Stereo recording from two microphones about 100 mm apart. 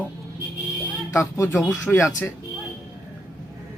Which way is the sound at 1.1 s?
30° left (ahead or behind).